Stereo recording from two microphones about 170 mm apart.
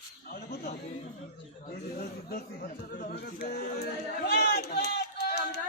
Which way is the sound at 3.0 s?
60° left (ahead or behind).